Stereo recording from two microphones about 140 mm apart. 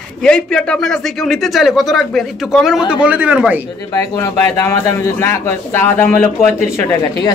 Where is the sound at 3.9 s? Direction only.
25° left (ahead or behind).